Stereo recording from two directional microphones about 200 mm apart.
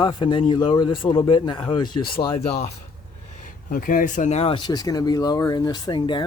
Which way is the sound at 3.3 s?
45° left (ahead or behind).